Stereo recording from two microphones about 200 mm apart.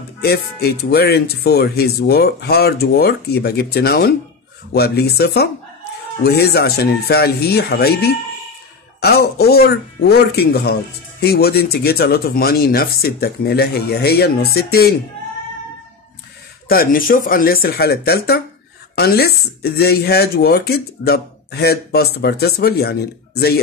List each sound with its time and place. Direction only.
0.2 s speech: 55° left (ahead or behind)
16.6 s speech: 45° left (ahead or behind)